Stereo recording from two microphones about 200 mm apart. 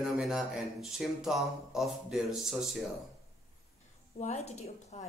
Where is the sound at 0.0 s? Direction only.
5° right (ahead or behind).